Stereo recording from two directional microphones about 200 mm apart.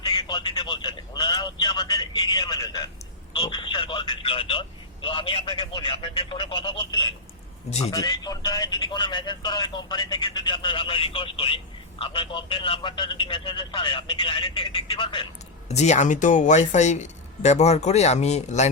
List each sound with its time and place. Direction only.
0.0 s speech: 20° left (ahead or behind)